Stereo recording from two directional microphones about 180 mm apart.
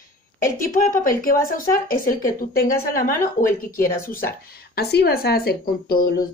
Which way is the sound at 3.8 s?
50° left (ahead or behind).